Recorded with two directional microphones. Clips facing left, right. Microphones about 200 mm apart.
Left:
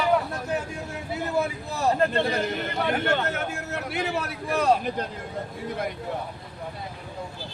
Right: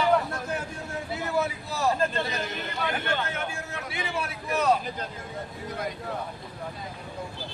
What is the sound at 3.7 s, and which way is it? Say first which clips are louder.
Speech: left 6 dB; 65° left (ahead or behind).